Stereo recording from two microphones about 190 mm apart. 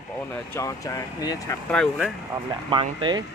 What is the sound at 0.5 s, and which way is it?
Speech, 15° left (ahead or behind).